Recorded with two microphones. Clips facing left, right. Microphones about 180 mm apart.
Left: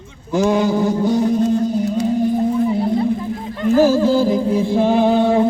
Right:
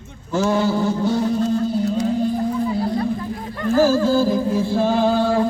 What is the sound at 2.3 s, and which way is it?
Music, 20° left (ahead or behind).